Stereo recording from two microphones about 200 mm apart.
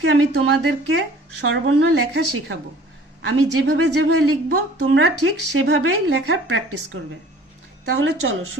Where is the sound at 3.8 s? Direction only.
60° right (ahead or behind).